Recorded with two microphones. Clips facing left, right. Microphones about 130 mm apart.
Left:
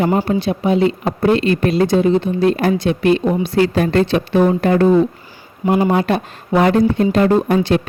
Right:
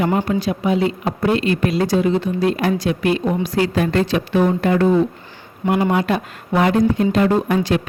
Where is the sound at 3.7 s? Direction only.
40° left (ahead or behind).